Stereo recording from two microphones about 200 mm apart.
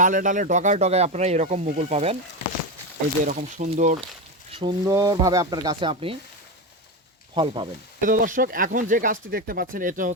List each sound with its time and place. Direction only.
0.0 s speech: 40° right (ahead or behind)
3.2 s speech: 40° right (ahead or behind)
4.5 s speech: 20° right (ahead or behind)
7.3 s speech: 25° right (ahead or behind)
8.0 s speech: 40° right (ahead or behind)